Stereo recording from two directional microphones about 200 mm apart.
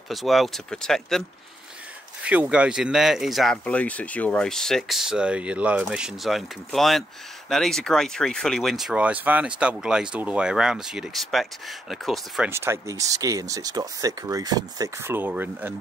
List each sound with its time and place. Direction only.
0.1 s speech: centre (ahead or behind)
2.2 s speech: 5° right (ahead or behind)